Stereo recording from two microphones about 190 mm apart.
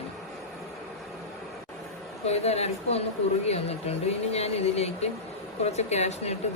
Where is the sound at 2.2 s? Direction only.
35° left (ahead or behind).